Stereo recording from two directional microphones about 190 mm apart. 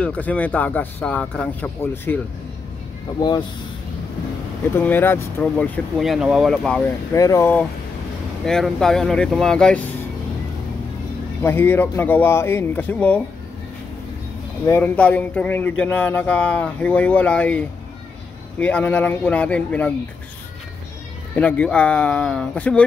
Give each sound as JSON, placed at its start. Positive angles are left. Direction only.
{"t": 0.0, "sound": "speech", "side_deg": 10}
{"t": 3.2, "sound": "speech", "side_deg": 20}
{"t": 4.7, "sound": "speech", "side_deg": 10}
{"t": 7.2, "sound": "speech", "side_deg": 15}
{"t": 8.5, "sound": "speech", "side_deg": 5}
{"t": 11.4, "sound": "speech", "side_deg": 10}
{"t": 14.7, "sound": "speech", "side_deg": 10}
{"t": 21.4, "sound": "speech", "side_deg": 5}